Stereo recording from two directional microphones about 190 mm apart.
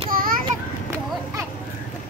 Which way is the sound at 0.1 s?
50° right (ahead or behind).